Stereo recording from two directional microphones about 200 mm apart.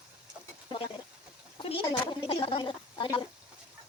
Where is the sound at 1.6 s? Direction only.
25° left (ahead or behind).